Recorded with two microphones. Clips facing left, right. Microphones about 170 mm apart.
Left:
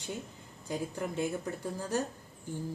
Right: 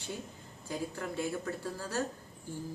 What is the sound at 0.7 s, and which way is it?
Speech, 20° left (ahead or behind).